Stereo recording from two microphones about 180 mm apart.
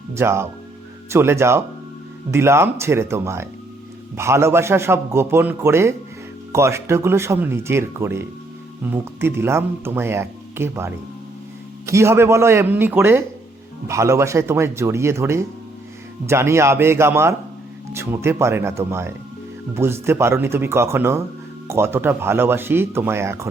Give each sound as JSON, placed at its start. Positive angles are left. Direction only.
{"t": 0.1, "sound": "speech", "side_deg": -15}